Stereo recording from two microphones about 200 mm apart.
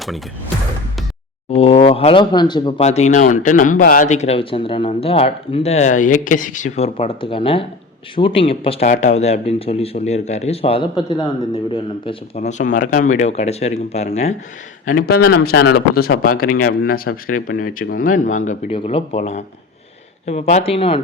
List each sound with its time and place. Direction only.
1.5 s speech: 30° left (ahead or behind)
14.8 s speech: 50° left (ahead or behind); by 21.0 s 30° left (ahead or behind)